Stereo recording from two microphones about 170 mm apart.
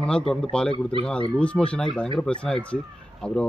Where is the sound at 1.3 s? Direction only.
5° left (ahead or behind).